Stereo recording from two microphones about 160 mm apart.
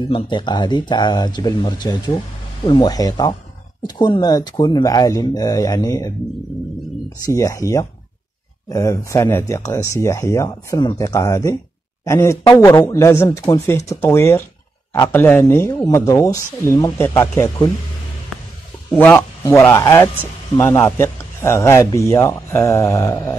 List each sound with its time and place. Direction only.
0.1 s speech: 30° left (ahead or behind)
7.2 s speech: 20° left (ahead or behind)
18.9 s speech: 10° left (ahead or behind)